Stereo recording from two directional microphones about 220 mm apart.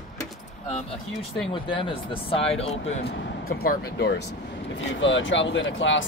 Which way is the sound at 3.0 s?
45° left (ahead or behind).